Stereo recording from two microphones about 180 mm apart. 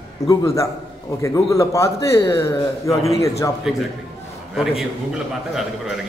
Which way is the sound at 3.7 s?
5° right (ahead or behind).